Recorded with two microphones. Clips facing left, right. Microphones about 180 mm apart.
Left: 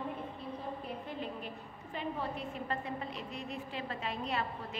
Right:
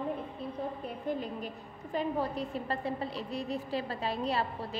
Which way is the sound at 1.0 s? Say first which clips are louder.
Right 6 dB; 40° right (ahead or behind).